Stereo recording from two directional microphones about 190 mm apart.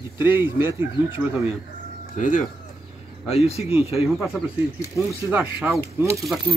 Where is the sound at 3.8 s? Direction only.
15° right (ahead or behind).